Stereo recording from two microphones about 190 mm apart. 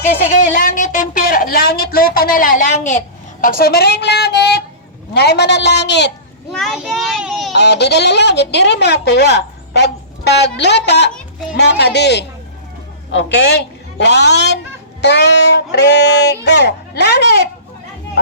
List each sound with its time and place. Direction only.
0.2 s a woman's voice: 40° left (ahead or behind)
3.4 s a woman's voice: 50° left (ahead or behind)
6.5 s a child's voice: centre (ahead or behind)
7.5 s a woman's voice: 60° left (ahead or behind)
11.1 s music: centre (ahead or behind)
11.5 s a woman's voice: 60° left (ahead or behind)